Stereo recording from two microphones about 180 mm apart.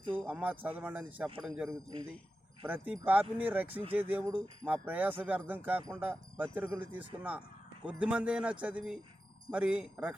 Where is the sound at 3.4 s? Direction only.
10° right (ahead or behind).